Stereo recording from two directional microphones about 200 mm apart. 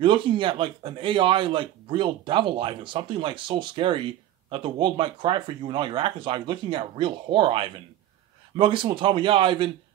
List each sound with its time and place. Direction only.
0.0 s a man's voice: 25° right (ahead or behind)